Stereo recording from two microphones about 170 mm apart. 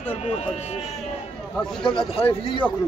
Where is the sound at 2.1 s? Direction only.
30° left (ahead or behind).